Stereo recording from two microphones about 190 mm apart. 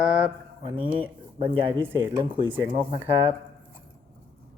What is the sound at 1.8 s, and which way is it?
Speech, 10° right (ahead or behind).